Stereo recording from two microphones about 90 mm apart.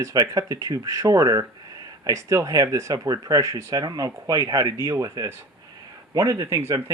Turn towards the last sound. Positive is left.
turn(degrees=-35)  # may be behind; listen again after turning